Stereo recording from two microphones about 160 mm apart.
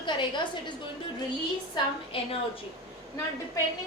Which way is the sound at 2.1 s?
35° left (ahead or behind).